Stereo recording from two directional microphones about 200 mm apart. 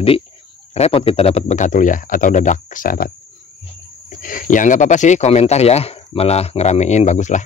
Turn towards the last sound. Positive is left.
turn(degrees=35)  # may be behind; listen again after turning